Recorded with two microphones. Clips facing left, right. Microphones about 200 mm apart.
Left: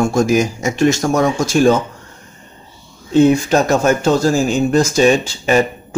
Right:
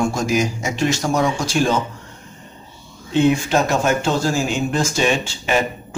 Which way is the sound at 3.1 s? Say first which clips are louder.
Left 5 dB; 40° left (ahead or behind).